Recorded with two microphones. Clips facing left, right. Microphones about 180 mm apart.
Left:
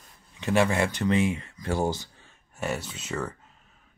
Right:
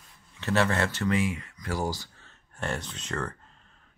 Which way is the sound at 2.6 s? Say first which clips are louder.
Left 2 dB; 5° left (ahead or behind).